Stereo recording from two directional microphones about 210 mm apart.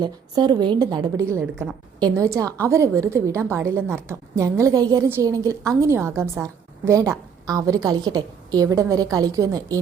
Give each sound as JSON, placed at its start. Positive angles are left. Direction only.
{"t": 0.0, "sound": "a woman's voice", "side_deg": -20}